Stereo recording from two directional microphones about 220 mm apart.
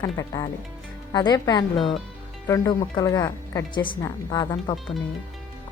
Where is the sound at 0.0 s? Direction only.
15° left (ahead or behind).